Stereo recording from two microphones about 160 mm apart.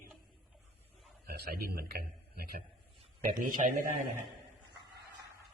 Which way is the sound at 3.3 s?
60° right (ahead or behind).